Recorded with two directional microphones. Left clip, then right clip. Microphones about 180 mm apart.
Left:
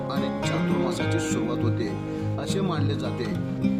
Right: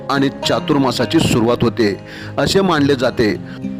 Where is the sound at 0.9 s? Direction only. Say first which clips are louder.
Right 11 dB; 55° right (ahead or behind).